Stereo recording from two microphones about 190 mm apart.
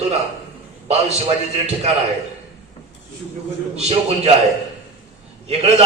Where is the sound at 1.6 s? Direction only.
35° right (ahead or behind).